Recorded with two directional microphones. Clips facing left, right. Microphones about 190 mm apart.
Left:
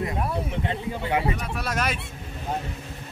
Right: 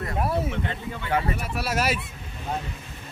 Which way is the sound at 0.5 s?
30° left (ahead or behind).